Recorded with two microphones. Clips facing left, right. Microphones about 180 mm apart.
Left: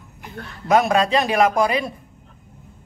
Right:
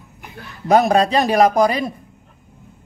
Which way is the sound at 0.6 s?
35° right (ahead or behind).